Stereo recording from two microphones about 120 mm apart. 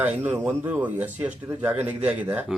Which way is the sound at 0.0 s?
15° right (ahead or behind).